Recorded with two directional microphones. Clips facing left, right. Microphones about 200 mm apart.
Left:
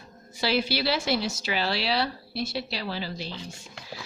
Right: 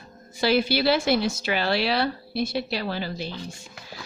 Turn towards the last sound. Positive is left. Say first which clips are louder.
# right 3 dB
turn(degrees=-50)  # may be behind; listen again after turning